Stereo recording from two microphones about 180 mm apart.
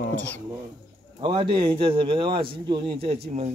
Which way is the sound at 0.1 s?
10° left (ahead or behind).